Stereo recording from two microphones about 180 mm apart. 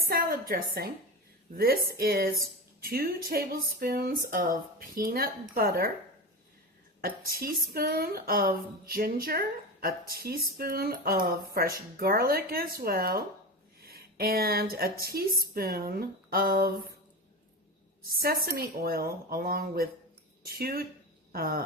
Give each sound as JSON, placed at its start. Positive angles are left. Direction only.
{"t": 0.1, "sound": "a woman's voice", "side_deg": -55}
{"t": 7.0, "sound": "speech", "side_deg": -55}
{"t": 18.0, "sound": "speech", "side_deg": -55}